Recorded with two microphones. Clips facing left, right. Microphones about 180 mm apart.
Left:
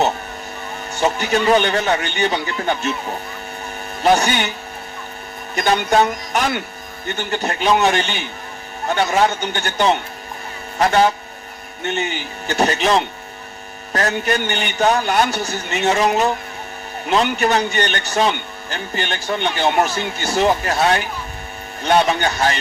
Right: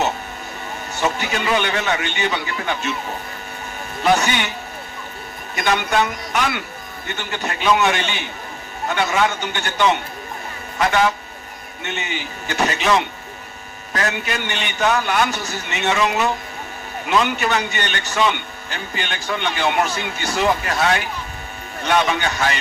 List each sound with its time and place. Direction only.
1.0 s a man's voice: 40° left (ahead or behind)
4.0 s a man's voice: 35° left (ahead or behind)
5.5 s a man's voice: 35° left (ahead or behind)
12.5 s a man's voice: 35° left (ahead or behind)